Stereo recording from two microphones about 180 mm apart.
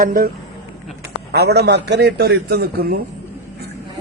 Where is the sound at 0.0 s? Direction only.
50° right (ahead or behind).